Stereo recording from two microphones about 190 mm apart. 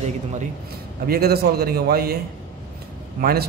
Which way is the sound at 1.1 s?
55° right (ahead or behind).